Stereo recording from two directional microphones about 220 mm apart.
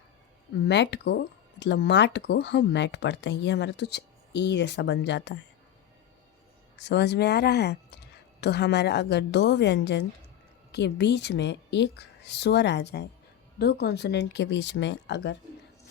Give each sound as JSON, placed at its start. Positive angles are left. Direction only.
{"t": 0.7, "sound": "speech", "side_deg": 50}
{"t": 6.7, "sound": "speech", "side_deg": 50}